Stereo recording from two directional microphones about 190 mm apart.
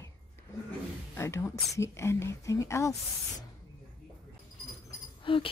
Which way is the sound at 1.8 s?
15° left (ahead or behind).